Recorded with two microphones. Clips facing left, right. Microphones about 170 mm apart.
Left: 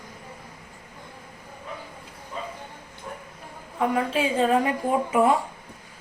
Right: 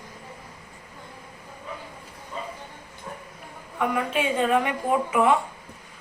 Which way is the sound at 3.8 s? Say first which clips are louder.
Left 2 dB; 30° left (ahead or behind).